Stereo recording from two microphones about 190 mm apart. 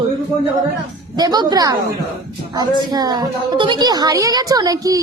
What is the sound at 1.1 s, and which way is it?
A woman's voice, 20° right (ahead or behind).